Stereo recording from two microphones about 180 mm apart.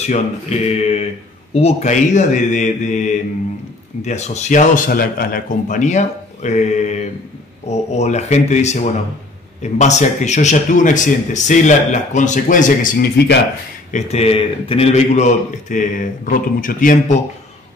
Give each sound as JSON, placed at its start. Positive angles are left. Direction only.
{"t": 0.0, "sound": "a man's voice", "side_deg": 40}
{"t": 13.9, "sound": "a man's voice", "side_deg": 35}